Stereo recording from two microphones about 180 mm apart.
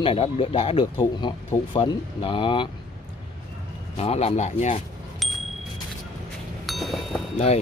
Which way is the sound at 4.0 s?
35° left (ahead or behind).